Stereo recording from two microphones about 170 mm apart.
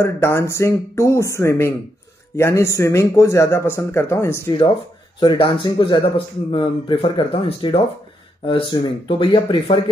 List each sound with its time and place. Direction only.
0.0 s a man's voice: 15° left (ahead or behind)
5.2 s speech: 25° left (ahead or behind)